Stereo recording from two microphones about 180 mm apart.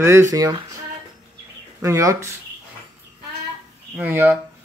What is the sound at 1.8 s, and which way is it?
Speech, 15° right (ahead or behind).